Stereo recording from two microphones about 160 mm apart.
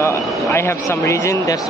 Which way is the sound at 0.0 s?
15° left (ahead or behind).